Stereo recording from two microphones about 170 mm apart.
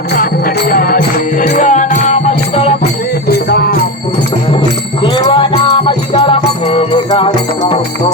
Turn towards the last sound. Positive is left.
turn(degrees=30)  # may be behind; listen again after turning